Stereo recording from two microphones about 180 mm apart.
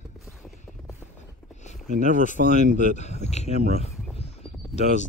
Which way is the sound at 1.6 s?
45° left (ahead or behind).